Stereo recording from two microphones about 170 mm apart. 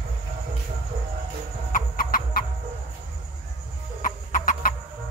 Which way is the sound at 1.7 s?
55° left (ahead or behind).